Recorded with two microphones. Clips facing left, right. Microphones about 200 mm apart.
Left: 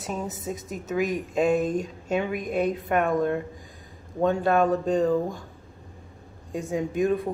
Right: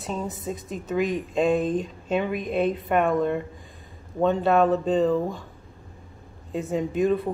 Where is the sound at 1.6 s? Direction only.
45° left (ahead or behind).